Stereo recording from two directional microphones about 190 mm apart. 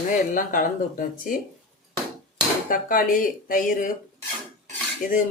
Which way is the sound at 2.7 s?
45° left (ahead or behind).